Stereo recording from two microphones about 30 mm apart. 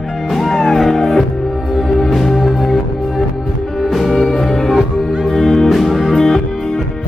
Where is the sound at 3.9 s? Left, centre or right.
Centre.